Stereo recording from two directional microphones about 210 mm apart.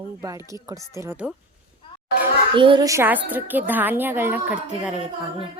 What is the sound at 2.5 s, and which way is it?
A woman's voice, 25° right (ahead or behind).